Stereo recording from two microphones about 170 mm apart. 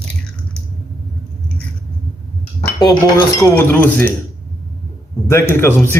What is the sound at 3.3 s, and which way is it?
Speech, 15° left (ahead or behind).